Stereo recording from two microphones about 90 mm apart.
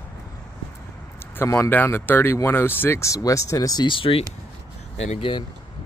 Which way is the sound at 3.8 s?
80° left.